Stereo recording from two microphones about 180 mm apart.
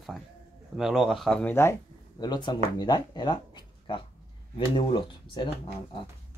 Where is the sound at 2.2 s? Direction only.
25° left (ahead or behind).